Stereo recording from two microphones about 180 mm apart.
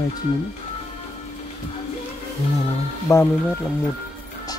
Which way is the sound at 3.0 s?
15° left (ahead or behind).